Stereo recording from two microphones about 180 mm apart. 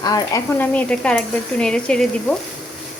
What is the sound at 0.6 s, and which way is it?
Sizzle, 5° left (ahead or behind).